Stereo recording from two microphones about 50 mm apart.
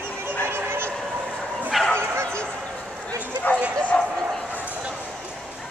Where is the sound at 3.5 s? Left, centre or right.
Left.